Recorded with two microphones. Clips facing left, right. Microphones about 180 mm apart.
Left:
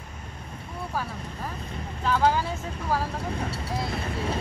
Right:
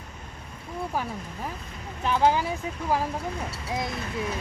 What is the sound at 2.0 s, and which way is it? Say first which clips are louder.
Speech: right 1 dB; 15° right (ahead or behind).